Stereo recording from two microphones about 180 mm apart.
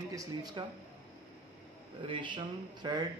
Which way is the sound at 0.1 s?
20° right (ahead or behind).